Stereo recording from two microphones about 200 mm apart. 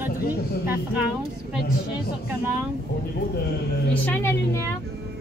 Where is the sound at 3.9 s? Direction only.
10° left (ahead or behind).